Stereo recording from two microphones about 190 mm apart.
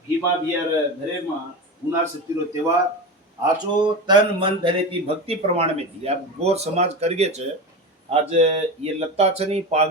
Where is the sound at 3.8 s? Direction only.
25° right (ahead or behind).